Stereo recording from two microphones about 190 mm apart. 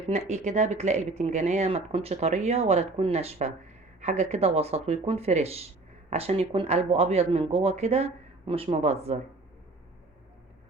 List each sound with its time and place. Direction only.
0.1 s speech: 35° right (ahead or behind)